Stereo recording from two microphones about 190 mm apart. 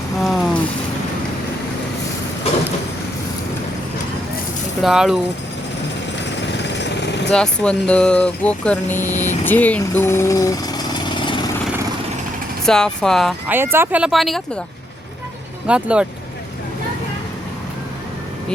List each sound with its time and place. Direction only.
0.2 s vehicle: centre (ahead or behind)
4.8 s speech: centre (ahead or behind)
6.4 s lawn mower: 65° left (ahead or behind)
7.3 s speech: 5° left (ahead or behind)
9.1 s speech: 40° left (ahead or behind)
9.4 s speech: 10° left (ahead or behind)
12.6 s speech: 5° left (ahead or behind)
13.5 s speech: 10° right (ahead or behind)
15.6 s speech: 5° right (ahead or behind)